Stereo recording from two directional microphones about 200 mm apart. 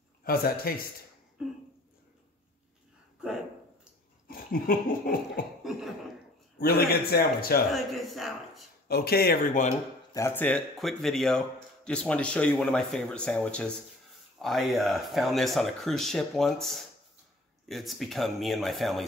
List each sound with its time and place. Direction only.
0.2 s a man's voice: 50° left (ahead or behind)
4.3 s laughter: 45° left (ahead or behind)
5.6 s a sound: centre (ahead or behind)
6.6 s a man's voice: 50° left (ahead or behind)
7.7 s a man's voice: centre (ahead or behind)
8.8 s a man's voice: 50° left (ahead or behind)
10.1 s a man's voice: 10° left (ahead or behind)